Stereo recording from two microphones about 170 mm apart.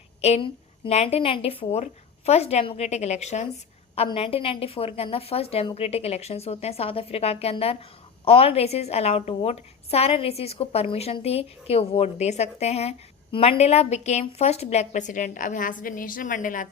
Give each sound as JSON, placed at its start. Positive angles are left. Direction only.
{"t": 0.2, "sound": "a woman's voice", "side_deg": 35}